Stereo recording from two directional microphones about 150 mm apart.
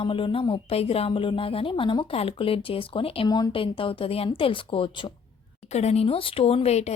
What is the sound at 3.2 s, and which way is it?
Speech, 25° left (ahead or behind).